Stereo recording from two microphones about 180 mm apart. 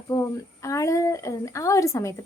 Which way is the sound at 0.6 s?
15° left (ahead or behind).